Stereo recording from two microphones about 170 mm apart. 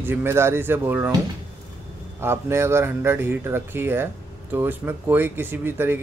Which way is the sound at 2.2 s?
15° right (ahead or behind).